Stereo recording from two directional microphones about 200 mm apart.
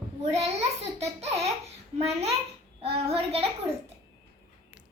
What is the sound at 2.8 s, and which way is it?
Child singing, 30° right (ahead or behind).